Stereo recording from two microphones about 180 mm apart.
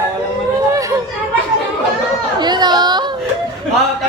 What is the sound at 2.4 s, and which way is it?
Chatter, 25° right (ahead or behind).